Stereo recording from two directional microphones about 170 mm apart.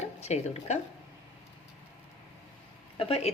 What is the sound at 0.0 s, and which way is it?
Speech, 40° left (ahead or behind).